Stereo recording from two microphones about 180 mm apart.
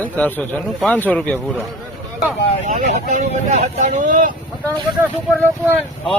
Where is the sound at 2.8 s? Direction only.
40° right (ahead or behind).